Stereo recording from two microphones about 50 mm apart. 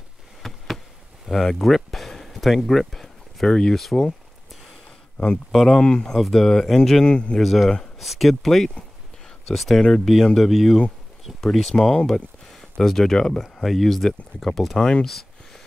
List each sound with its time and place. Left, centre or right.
0.4 s a sound: centre
2.6 s speech: centre
5.1 s speech: centre
5.5 s speech: centre
5.8 s speech: centre
6.1 s speech: centre
7.1 s a man's voice: left
7.3 s speech: centre
11.9 s speech: centre
15.0 s a sound: centre